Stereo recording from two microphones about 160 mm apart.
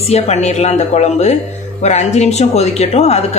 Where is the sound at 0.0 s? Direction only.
40° left (ahead or behind).